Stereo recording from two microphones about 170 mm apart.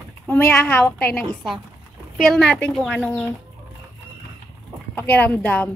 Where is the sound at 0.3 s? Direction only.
10° left (ahead or behind).